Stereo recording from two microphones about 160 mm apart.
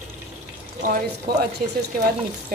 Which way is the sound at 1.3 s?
70° right (ahead or behind).